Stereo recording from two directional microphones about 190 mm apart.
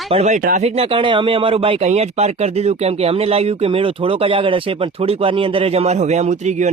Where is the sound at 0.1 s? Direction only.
35° right (ahead or behind).